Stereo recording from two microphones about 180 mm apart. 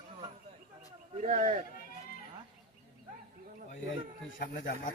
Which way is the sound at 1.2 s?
45° right (ahead or behind).